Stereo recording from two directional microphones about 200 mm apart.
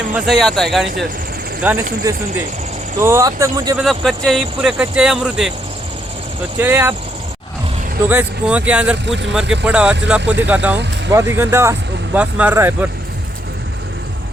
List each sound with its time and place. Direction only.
0.1 s speech: 5° right (ahead or behind); by 3.8 s 20° right (ahead or behind)
3.8 s speech: centre (ahead or behind)
6.6 s speech: 10° right (ahead or behind)
8.0 s speech: 10° right (ahead or behind)